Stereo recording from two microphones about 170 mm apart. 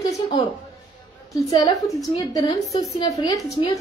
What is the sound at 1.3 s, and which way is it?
A woman's voice, 20° left (ahead or behind).